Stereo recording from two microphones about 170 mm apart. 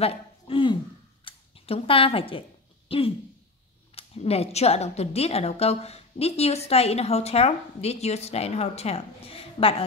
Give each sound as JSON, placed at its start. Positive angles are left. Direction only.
{"t": 0.0, "sound": "speech", "side_deg": 35}
{"t": 1.2, "sound": "scissors", "side_deg": 35}
{"t": 2.9, "sound": "a woman's voice", "side_deg": 35}